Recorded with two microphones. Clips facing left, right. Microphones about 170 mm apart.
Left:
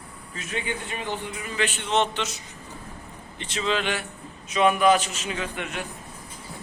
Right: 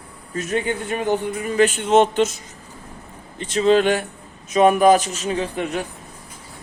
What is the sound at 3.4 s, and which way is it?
A man's voice, 40° right (ahead or behind).